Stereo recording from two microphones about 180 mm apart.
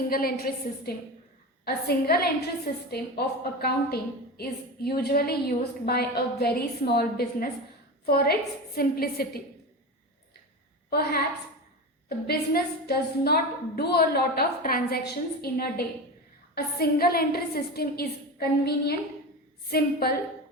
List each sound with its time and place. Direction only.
0.1 s a woman's voice: 55° left (ahead or behind)
10.8 s a woman's voice: 55° left (ahead or behind)